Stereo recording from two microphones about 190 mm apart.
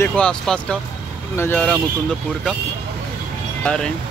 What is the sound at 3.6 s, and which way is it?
Speech, 5° left (ahead or behind).